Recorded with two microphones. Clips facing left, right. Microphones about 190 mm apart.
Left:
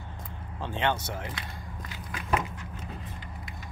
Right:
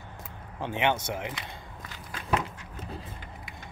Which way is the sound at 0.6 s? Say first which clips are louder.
Right 2 dB; 15° right (ahead or behind).